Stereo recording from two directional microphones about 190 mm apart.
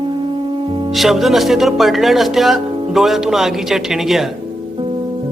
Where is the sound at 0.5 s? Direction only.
25° right (ahead or behind).